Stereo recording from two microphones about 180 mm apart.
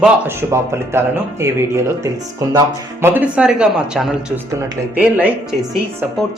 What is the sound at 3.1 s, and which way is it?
Speech, 10° right (ahead or behind).